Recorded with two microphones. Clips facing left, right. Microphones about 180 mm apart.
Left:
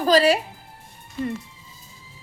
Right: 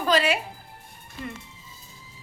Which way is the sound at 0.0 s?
35° left (ahead or behind).